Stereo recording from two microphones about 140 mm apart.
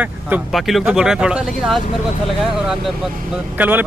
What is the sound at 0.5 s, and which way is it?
Speech, centre (ahead or behind).